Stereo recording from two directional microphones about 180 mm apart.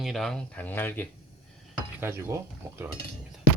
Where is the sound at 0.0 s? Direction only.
Centre (ahead or behind).